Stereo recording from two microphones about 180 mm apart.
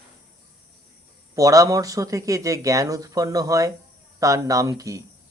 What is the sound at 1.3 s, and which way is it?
Speech, 20° right (ahead or behind).